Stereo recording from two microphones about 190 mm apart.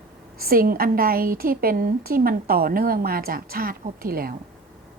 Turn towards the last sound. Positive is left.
turn(degrees=-50)  # may be behind; listen again after turning